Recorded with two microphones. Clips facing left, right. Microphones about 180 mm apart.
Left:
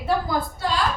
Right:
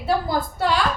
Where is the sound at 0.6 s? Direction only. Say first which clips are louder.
Right 7 dB; 70° right (ahead or behind).